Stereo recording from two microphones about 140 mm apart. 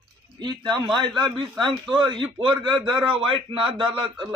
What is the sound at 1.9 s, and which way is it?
A man's voice, 35° right (ahead or behind).